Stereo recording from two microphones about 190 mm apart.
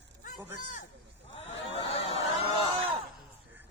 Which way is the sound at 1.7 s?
30° left (ahead or behind).